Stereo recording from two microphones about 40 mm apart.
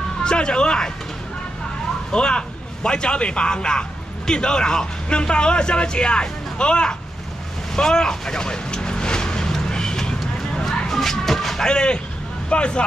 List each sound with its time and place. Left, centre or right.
0.2 s speech: left
2.1 s speech: left
7.7 s vehicle: centre
10.6 s a sound: centre
11.7 s speech: left